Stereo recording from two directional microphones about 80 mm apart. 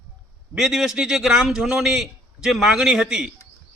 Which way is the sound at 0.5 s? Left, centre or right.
Centre.